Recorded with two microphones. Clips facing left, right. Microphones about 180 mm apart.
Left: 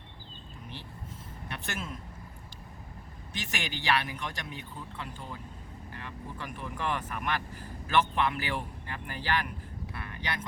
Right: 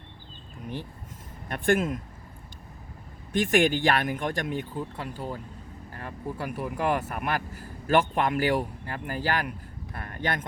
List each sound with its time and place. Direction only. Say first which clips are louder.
1.5 s speech: right 14 dB; 50° right (ahead or behind)
3.3 s speech: right 15 dB; 50° right (ahead or behind)
5.9 s vehicle: right 7 dB; 40° right (ahead or behind)
6.7 s speech: right 6 dB; 40° right (ahead or behind)
9.9 s a sound: right 7 dB; 45° right (ahead or behind)